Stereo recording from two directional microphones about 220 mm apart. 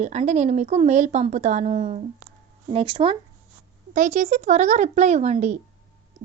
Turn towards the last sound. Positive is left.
turn(degrees=-30)  # may be behind; listen again after turning